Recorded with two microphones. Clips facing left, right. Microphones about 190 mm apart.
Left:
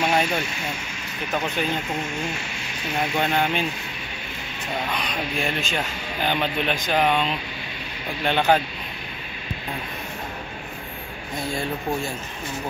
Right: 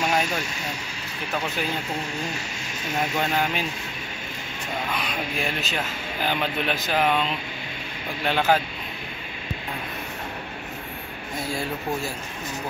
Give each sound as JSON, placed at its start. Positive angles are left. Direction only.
{"t": 0.1, "sound": "speech", "side_deg": 0}
{"t": 3.2, "sound": "speech", "side_deg": -5}
{"t": 4.9, "sound": "speech", "side_deg": -5}